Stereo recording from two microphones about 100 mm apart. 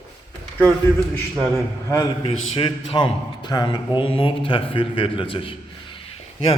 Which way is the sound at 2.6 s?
50° left (ahead or behind).